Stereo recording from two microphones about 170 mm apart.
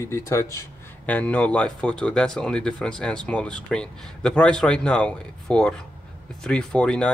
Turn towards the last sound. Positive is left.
turn(degrees=5)  # may be behind; listen again after turning